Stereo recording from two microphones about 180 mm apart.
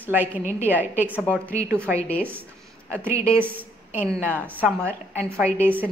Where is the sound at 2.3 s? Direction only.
10° right (ahead or behind).